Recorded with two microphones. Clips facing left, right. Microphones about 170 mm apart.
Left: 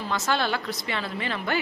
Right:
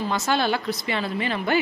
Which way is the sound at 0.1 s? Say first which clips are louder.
Right 1 dB; 15° right (ahead or behind).